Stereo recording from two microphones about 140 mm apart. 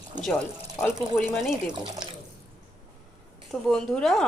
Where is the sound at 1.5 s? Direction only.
30° right (ahead or behind).